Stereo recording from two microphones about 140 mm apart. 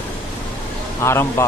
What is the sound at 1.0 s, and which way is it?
Speech, 20° left (ahead or behind).